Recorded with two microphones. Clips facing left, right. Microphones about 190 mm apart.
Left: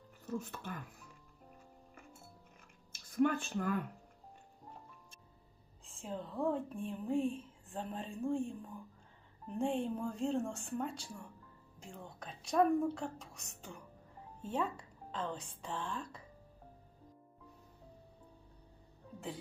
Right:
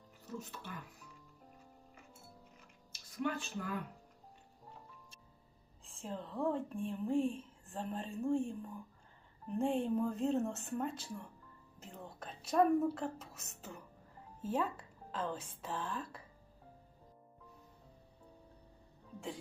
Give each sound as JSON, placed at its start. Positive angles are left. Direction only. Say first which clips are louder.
{"t": 0.3, "sound": "speech", "louder": "left 5 dB", "side_deg": 50}
{"t": 2.6, "sound": "a sound", "louder": "right 1 dB", "side_deg": 50}
{"t": 5.8, "sound": "speech", "louder": "left 1 dB", "side_deg": 0}